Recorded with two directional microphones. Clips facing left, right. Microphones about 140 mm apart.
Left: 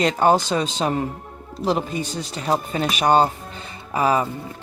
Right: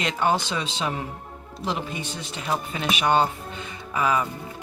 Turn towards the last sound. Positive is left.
turn(degrees=35)  # may be behind; listen again after turning